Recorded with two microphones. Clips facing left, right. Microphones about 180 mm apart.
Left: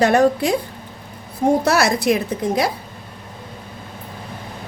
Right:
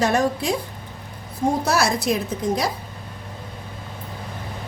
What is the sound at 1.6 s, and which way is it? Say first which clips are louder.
A woman's voice: left 4 dB; 65° left (ahead or behind).